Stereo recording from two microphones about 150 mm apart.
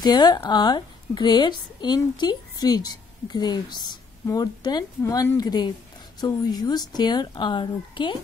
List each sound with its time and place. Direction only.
0.0 s a woman's voice: 30° left (ahead or behind)